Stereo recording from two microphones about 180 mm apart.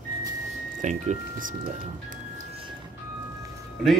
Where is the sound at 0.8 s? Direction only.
40° right (ahead or behind).